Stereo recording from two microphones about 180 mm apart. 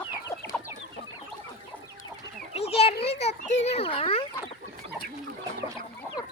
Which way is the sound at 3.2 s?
40° left (ahead or behind).